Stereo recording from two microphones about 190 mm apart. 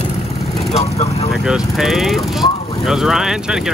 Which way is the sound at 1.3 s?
5° right (ahead or behind).